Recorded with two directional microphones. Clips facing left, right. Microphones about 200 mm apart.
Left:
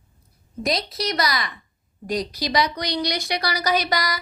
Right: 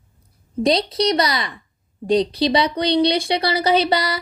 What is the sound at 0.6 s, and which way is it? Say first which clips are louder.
A woman's voice: right 7 dB; 30° right (ahead or behind).